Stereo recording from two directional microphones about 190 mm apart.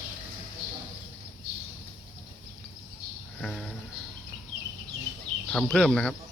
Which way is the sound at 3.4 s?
5° left (ahead or behind).